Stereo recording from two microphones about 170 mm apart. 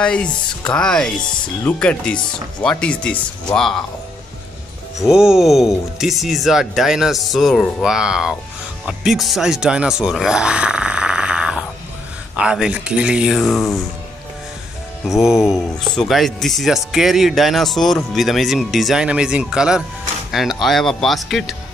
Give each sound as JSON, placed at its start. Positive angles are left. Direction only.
{"t": 0.0, "sound": "speech", "side_deg": 5}
{"t": 5.0, "sound": "speech", "side_deg": -5}
{"t": 15.0, "sound": "speech", "side_deg": 0}
{"t": 20.2, "sound": "music", "side_deg": 0}
{"t": 20.6, "sound": "speech", "side_deg": 0}